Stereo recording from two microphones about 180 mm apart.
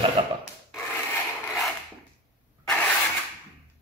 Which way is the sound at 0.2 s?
25° right (ahead or behind).